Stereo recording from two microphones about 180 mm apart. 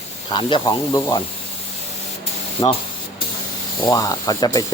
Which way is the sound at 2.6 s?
30° left (ahead or behind).